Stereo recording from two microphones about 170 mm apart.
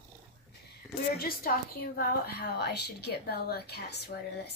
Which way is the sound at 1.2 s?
60° left (ahead or behind).